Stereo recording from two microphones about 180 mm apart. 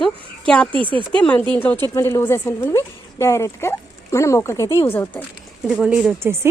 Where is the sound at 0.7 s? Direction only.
30° right (ahead or behind).